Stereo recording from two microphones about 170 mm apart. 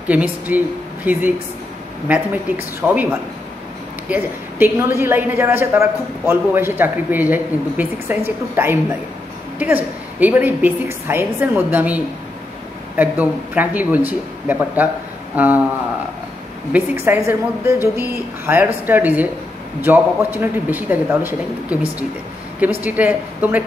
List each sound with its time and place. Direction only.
0.1 s a woman's voice: 10° right (ahead or behind)
16.7 s a woman's voice: 10° right (ahead or behind)
22.8 s a woman's voice: 10° right (ahead or behind)